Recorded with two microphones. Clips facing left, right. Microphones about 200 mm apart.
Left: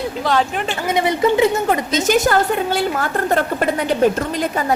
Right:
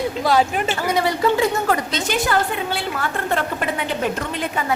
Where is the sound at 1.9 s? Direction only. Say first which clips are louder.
Left 6 dB; 45° left (ahead or behind).